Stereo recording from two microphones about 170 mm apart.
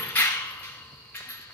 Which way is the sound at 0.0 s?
15° left (ahead or behind).